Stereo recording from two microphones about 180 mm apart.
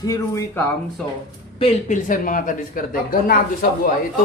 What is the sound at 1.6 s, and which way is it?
Speech, 40° left (ahead or behind).